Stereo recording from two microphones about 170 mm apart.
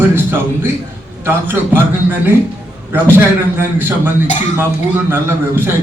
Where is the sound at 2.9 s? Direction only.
15° right (ahead or behind).